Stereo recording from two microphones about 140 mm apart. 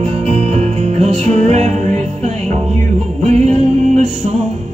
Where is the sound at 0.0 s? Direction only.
55° right (ahead or behind).